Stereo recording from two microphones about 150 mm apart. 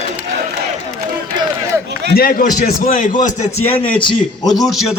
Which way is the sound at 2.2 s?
80° left.